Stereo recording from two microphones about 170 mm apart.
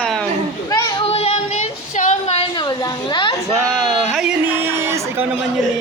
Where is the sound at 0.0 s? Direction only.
5° left (ahead or behind).